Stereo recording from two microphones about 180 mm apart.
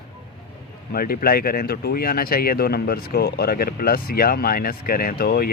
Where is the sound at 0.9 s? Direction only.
55° left (ahead or behind).